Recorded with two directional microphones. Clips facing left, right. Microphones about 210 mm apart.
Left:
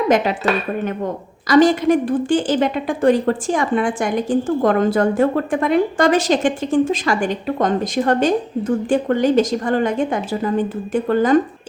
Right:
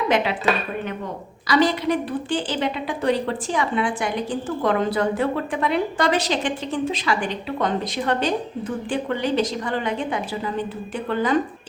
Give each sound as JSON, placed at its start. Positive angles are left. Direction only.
{"t": 1.5, "sound": "a woman's voice", "side_deg": 45}